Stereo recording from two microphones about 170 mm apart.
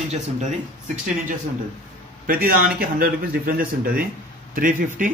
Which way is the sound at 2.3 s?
55° right (ahead or behind).